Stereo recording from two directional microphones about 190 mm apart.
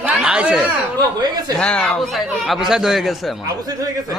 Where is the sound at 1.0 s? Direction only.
20° right (ahead or behind).